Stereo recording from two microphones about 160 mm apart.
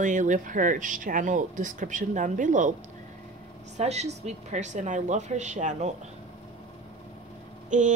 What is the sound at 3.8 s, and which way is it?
Speech, 45° right (ahead or behind).